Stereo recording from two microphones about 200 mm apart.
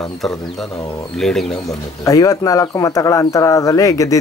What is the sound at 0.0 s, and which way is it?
Speech, centre (ahead or behind).